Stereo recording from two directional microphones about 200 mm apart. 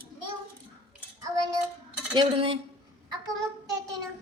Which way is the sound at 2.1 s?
25° right (ahead or behind).